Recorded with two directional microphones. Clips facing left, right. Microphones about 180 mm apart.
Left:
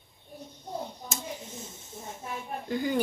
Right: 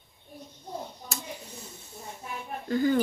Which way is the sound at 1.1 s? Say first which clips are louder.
Right 1 dB; 20° left (ahead or behind).